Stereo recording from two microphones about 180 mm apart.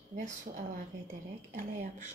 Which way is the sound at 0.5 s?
45° right (ahead or behind).